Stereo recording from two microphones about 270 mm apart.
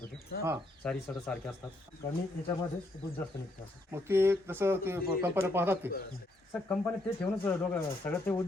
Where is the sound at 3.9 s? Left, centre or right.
Centre.